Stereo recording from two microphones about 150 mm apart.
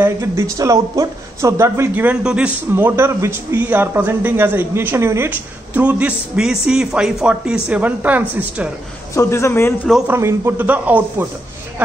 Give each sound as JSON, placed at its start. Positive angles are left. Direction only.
{"t": 0.0, "sound": "speech", "side_deg": -20}
{"t": 9.1, "sound": "a man's voice", "side_deg": 20}
{"t": 10.0, "sound": "speech", "side_deg": -15}